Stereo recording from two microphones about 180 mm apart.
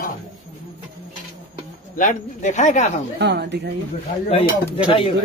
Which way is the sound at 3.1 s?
70° right (ahead or behind).